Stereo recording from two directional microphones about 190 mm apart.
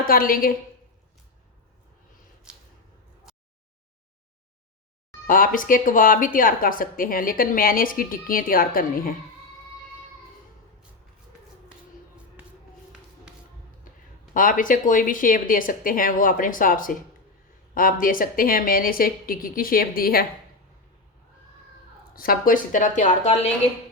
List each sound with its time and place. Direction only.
0.1 s speech: 50° left (ahead or behind)
2.5 s a sound: 5° right (ahead or behind)
5.2 s speech: 45° left (ahead or behind)
14.3 s speech: 45° left (ahead or behind)
18.0 s speech: 45° left (ahead or behind)
22.1 s speech: 50° left (ahead or behind)